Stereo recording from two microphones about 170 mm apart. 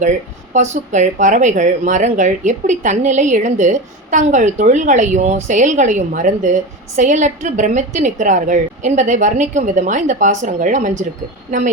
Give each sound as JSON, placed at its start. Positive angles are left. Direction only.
{"t": 0.5, "sound": "speech", "side_deg": -45}